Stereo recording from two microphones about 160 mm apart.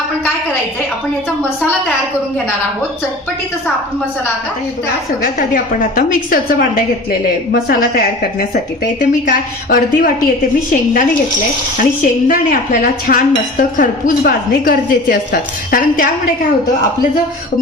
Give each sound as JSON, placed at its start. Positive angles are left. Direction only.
{"t": 5.2, "sound": "speech", "side_deg": 60}